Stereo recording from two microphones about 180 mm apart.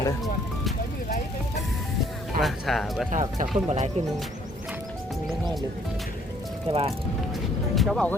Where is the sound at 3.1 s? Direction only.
45° right (ahead or behind).